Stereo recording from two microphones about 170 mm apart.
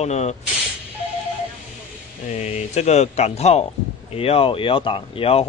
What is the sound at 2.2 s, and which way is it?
Speech, 40° left (ahead or behind).